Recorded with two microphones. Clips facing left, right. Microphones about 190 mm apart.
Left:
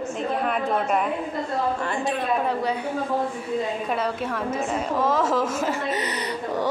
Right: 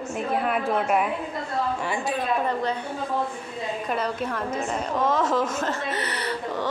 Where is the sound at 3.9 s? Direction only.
Centre (ahead or behind).